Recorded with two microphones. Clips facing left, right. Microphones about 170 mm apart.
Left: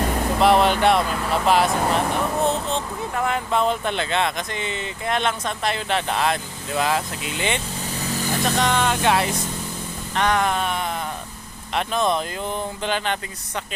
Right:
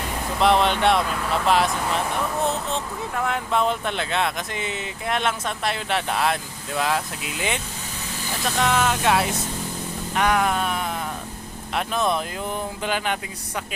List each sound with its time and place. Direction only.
0.3 s speech: 5° left (ahead or behind)